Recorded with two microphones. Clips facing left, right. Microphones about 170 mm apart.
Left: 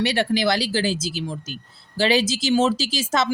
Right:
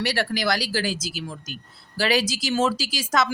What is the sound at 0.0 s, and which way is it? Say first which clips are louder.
A woman's voice: left 4 dB; 20° left (ahead or behind).